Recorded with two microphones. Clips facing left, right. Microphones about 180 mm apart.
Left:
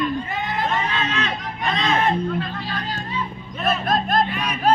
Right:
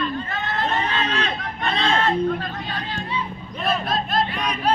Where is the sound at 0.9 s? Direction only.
35° right (ahead or behind).